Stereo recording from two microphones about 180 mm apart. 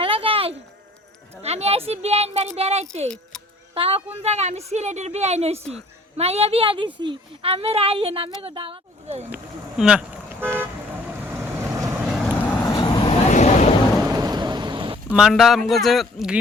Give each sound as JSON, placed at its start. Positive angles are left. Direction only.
{"t": 0.0, "sound": "insect", "side_deg": -30}
{"t": 1.4, "sound": "a sound", "side_deg": -35}
{"t": 1.9, "sound": "speech", "side_deg": -35}
{"t": 3.3, "sound": "a sound", "side_deg": 5}
{"t": 3.8, "sound": "speech", "side_deg": -30}
{"t": 9.3, "sound": "toot", "side_deg": -5}
{"t": 12.1, "sound": "vehicle", "side_deg": 5}
{"t": 12.6, "sound": "vehicle", "side_deg": 25}
{"t": 13.2, "sound": "boat", "side_deg": 40}
{"t": 14.1, "sound": "thunder", "side_deg": -20}
{"t": 15.1, "sound": "speech", "side_deg": 0}